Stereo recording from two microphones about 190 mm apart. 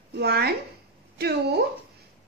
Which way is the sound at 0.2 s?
55° right (ahead or behind).